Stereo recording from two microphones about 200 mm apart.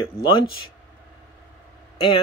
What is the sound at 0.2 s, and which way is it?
Speech, 25° left (ahead or behind).